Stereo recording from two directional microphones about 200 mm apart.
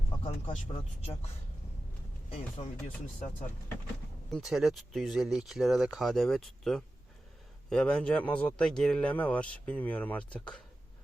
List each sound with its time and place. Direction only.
0.2 s speech: 30° left (ahead or behind)
2.6 s speech: 30° left (ahead or behind)
4.3 s speech: centre (ahead or behind)